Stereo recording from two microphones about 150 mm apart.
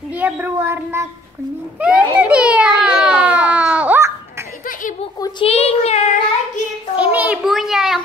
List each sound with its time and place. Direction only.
0.1 s a child's voice: 10° right (ahead or behind)
1.8 s baby cry: 5° right (ahead or behind)
5.4 s child singing: 40° left (ahead or behind)
7.0 s a sound: 10° right (ahead or behind)